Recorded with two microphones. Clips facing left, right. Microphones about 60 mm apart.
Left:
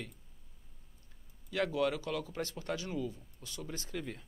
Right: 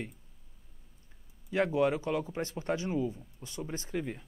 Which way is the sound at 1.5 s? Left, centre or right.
Right.